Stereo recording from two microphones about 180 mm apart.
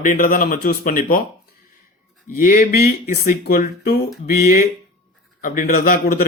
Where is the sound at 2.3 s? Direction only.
50° left (ahead or behind).